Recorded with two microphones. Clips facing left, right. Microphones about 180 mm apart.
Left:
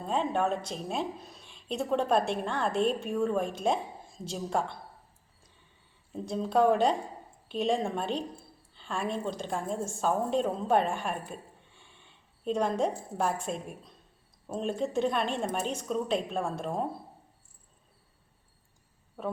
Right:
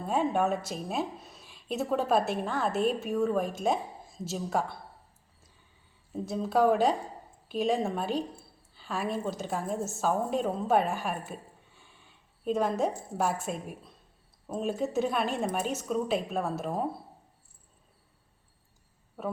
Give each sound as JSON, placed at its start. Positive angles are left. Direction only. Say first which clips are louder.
{"t": 0.0, "sound": "speech", "louder": "right 1 dB", "side_deg": -10}
{"t": 6.1, "sound": "speech", "louder": "even", "side_deg": -5}
{"t": 11.3, "sound": "a sound", "louder": "right 1 dB", "side_deg": -5}
{"t": 13.1, "sound": "speech", "louder": "even", "side_deg": -5}
{"t": 19.2, "sound": "speech", "louder": "even", "side_deg": -5}